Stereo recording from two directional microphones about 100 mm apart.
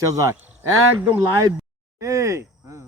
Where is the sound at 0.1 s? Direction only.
35° right (ahead or behind).